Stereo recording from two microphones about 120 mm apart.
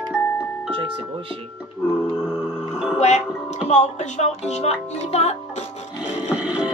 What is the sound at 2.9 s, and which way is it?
Speech, 65° left (ahead or behind).